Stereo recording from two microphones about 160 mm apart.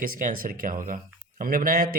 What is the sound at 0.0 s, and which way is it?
Speech, 60° right (ahead or behind).